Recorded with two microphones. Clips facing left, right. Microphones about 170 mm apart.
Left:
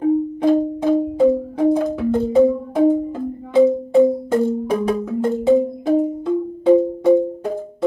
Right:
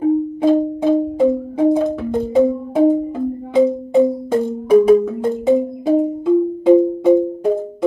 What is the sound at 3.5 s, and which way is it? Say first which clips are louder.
Music: left 1 dB; 15° right (ahead or behind).